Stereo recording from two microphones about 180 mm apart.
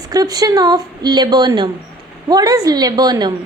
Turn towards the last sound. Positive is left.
turn(degrees=-20)  # may be behind; listen again after turning